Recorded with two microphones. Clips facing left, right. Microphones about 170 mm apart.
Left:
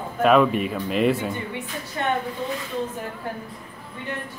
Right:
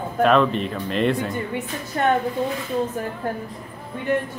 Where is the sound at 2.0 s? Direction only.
50° right (ahead or behind).